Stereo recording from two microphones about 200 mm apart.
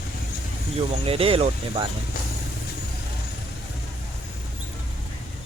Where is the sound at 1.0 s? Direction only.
30° right (ahead or behind).